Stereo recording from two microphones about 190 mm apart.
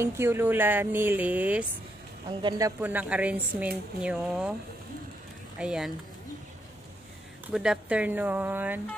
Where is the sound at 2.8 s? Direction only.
10° right (ahead or behind).